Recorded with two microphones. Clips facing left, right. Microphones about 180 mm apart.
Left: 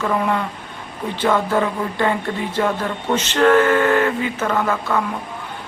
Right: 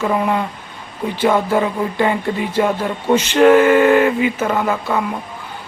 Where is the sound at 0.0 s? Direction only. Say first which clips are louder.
Right 2 dB; 10° right (ahead or behind).